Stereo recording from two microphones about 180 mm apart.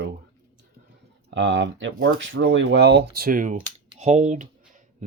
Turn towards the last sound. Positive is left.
turn(degrees=-40)  # may be behind; listen again after turning